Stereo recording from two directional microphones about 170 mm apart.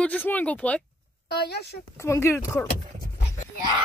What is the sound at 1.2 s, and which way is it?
Speech, 70° left (ahead or behind).